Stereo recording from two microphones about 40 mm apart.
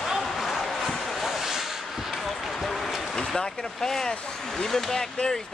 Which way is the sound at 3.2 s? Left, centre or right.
Centre.